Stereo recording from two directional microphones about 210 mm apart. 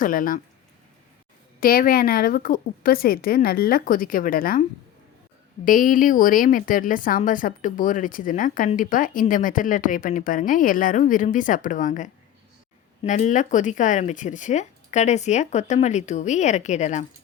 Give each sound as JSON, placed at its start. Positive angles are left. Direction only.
{"t": 0.0, "sound": "speech", "side_deg": 40}
{"t": 1.6, "sound": "a woman's voice", "side_deg": 45}
{"t": 5.6, "sound": "speech", "side_deg": 40}